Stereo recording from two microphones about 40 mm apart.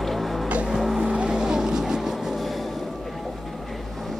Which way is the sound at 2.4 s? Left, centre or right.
Centre.